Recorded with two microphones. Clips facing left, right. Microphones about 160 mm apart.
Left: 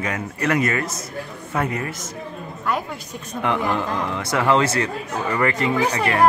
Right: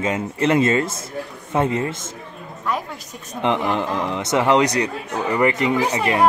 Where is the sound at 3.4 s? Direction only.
20° right (ahead or behind).